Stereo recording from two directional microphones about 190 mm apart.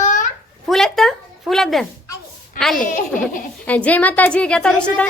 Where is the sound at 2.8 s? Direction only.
45° left (ahead or behind).